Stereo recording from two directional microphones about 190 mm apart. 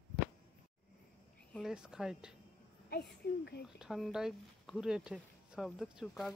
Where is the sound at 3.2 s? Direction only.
60° left (ahead or behind).